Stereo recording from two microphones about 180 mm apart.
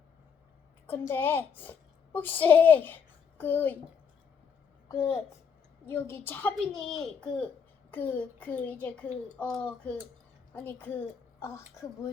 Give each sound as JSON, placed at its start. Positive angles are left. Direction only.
{"t": 0.9, "sound": "a child's voice", "side_deg": 10}
{"t": 4.9, "sound": "a child's voice", "side_deg": 15}